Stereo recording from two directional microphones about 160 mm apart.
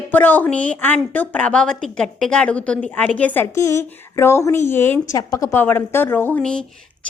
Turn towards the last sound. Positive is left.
turn(degrees=5)  # may be behind; listen again after turning